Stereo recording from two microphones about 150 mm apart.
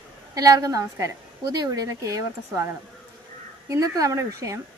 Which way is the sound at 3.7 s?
20° right (ahead or behind).